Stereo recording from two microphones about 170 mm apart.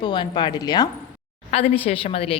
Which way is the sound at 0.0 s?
25° left (ahead or behind).